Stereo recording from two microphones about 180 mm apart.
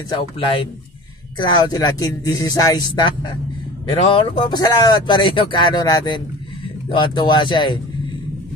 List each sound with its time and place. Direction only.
0.1 s speech: 30° left (ahead or behind)